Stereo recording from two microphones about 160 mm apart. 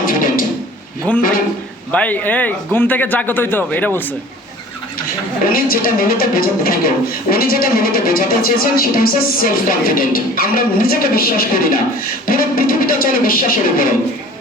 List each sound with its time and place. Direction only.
0.0 s a sound: 60° left (ahead or behind)
1.1 s a man's voice: 10° left (ahead or behind)
5.5 s a man's voice: 65° left (ahead or behind)